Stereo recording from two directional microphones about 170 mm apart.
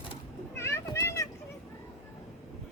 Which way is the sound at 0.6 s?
15° left (ahead or behind).